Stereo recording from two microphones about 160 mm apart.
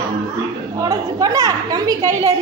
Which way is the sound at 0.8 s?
20° right (ahead or behind).